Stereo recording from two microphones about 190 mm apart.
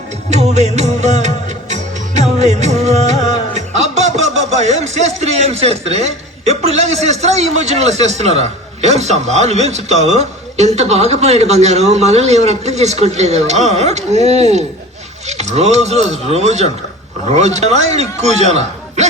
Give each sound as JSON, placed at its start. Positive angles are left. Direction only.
{"t": 0.3, "sound": "music", "side_deg": -35}